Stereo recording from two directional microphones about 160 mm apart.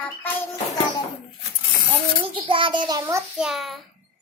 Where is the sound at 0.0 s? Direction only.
10° left (ahead or behind).